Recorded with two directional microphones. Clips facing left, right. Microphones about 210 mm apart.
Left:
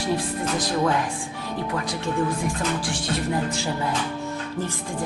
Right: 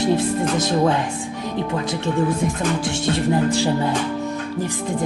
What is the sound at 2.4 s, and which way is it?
Music, 25° right (ahead or behind).